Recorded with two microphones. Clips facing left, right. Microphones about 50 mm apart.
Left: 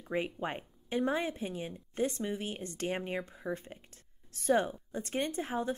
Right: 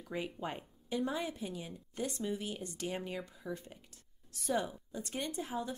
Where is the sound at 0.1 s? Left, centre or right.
Left.